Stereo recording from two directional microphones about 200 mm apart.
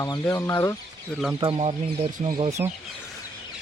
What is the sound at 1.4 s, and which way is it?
Speech, 25° right (ahead or behind).